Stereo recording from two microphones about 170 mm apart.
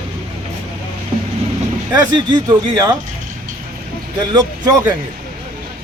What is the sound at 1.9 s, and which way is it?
Speech, 25° right (ahead or behind).